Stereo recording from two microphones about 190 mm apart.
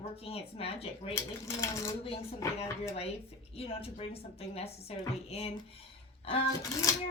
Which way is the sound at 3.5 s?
30° left (ahead or behind).